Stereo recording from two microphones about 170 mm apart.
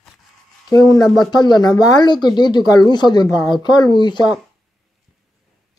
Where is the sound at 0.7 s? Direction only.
20° left (ahead or behind).